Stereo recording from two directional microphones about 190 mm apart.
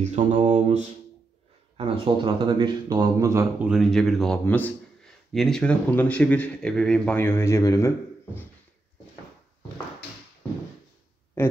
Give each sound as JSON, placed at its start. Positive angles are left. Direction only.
{"t": 0.0, "sound": "mantra", "side_deg": -35}
{"t": 1.8, "sound": "speech", "side_deg": -25}
{"t": 3.6, "sound": "a man's voice", "side_deg": 0}
{"t": 11.4, "sound": "speech", "side_deg": 10}